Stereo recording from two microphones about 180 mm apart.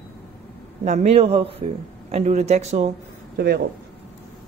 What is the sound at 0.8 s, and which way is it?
A woman's voice, 40° right (ahead or behind).